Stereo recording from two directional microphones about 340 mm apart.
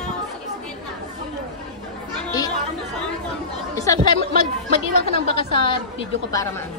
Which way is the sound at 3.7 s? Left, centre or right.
Centre.